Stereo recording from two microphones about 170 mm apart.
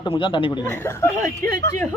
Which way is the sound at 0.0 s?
30° left (ahead or behind).